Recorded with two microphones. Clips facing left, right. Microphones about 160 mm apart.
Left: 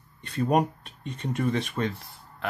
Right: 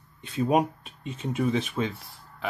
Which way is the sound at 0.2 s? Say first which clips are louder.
Even; centre (ahead or behind).